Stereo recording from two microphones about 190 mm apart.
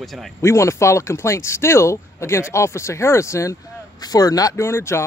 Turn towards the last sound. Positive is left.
turn(degrees=15)  # may be behind; listen again after turning